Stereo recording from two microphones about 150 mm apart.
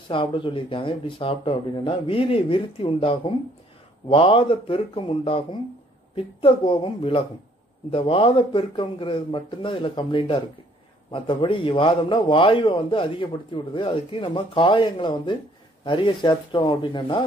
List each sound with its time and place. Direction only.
0.1 s a man's voice: 35° left (ahead or behind)